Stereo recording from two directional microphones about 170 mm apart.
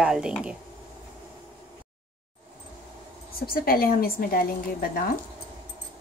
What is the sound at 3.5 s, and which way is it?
A woman's voice, 60° left (ahead or behind).